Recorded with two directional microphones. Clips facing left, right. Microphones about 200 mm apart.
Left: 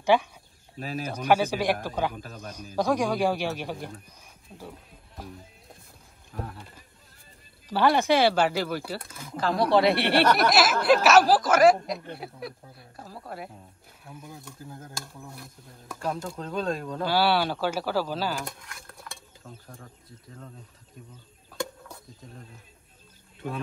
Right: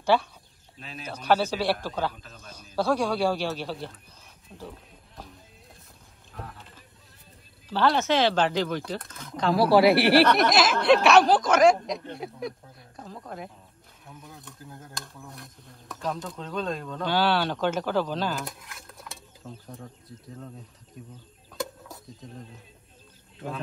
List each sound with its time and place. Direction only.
0.0 s a man's voice: 15° left (ahead or behind)
2.1 s a man's voice: 55° left (ahead or behind)
2.5 s a man's voice: 15° left (ahead or behind)
7.6 s speech: 10° left (ahead or behind)
21.5 s a sound: centre (ahead or behind)